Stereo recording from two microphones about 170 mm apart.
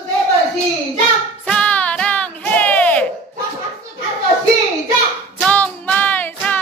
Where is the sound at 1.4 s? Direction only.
5° left (ahead or behind).